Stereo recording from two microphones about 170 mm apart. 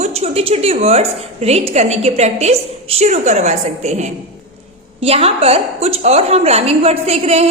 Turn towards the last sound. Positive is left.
turn(degrees=-40)  # may be behind; listen again after turning